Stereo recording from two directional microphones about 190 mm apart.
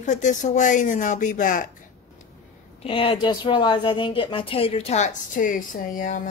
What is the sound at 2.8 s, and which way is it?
A woman's voice, 30° left (ahead or behind).